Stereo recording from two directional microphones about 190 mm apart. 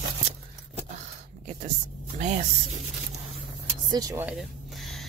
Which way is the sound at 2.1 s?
35° right (ahead or behind).